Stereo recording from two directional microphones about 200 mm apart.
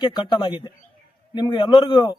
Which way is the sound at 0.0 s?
20° left (ahead or behind).